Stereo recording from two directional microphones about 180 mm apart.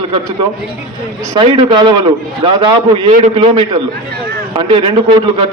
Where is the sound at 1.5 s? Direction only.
25° right (ahead or behind).